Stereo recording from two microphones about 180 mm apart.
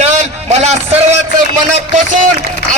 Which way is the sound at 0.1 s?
40° right (ahead or behind).